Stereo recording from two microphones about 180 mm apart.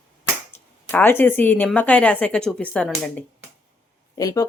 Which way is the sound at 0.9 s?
10° left (ahead or behind).